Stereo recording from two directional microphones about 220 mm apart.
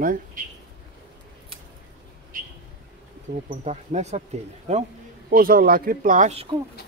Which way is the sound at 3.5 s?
30° right (ahead or behind).